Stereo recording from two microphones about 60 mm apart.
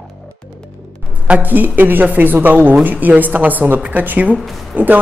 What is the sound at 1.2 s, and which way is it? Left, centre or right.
A woman's voice, right.